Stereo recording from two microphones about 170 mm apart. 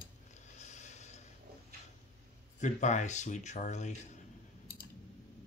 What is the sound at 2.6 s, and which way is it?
Speech, 45° left (ahead or behind).